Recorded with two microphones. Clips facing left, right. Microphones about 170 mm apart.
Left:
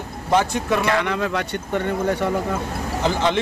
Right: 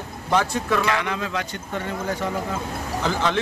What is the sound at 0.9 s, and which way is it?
Speech, 55° left (ahead or behind).